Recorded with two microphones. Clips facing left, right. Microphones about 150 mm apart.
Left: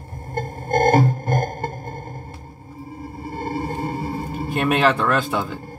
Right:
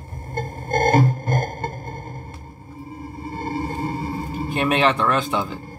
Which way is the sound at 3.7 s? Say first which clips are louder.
Even; 50° left (ahead or behind).